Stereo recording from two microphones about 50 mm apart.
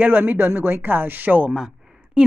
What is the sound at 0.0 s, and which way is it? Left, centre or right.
Speech, right.